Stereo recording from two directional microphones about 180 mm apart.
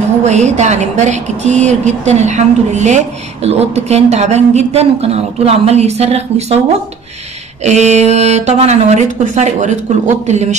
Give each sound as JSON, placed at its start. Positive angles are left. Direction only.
{"t": 0.2, "sound": "speech", "side_deg": -40}
{"t": 7.6, "sound": "speech", "side_deg": -40}